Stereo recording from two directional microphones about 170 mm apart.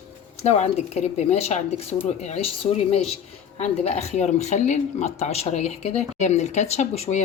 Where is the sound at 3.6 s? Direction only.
40° left (ahead or behind).